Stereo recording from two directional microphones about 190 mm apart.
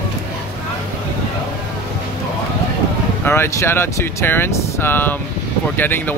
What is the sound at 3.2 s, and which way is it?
Speech, 10° left (ahead or behind).